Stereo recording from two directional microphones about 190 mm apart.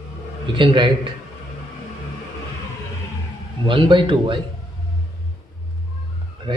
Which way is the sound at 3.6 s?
25° right (ahead or behind).